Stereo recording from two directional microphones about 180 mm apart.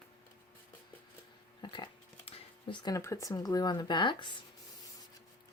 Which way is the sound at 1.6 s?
25° left (ahead or behind).